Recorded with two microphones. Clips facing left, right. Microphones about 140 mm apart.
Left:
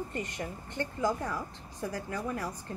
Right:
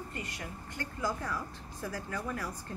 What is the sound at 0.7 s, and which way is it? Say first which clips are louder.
Speech: left 5 dB; 20° left (ahead or behind).